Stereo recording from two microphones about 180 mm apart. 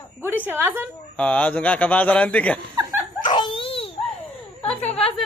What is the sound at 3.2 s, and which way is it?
Dog, 25° left (ahead or behind).